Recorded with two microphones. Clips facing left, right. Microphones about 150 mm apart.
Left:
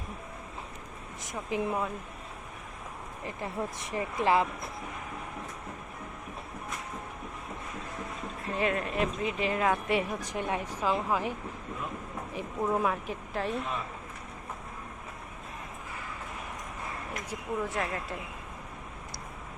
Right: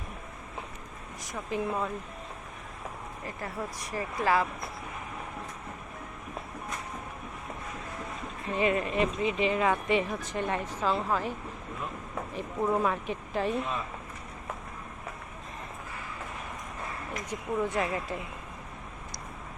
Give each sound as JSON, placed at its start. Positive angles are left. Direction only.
{"t": 1.2, "sound": "speech", "side_deg": 15}
{"t": 3.2, "sound": "speech", "side_deg": 20}
{"t": 8.5, "sound": "speech", "side_deg": 0}
{"t": 17.2, "sound": "speech", "side_deg": 0}